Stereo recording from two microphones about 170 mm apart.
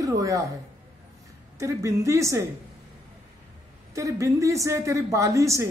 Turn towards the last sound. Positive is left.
turn(degrees=-20)  # may be behind; listen again after turning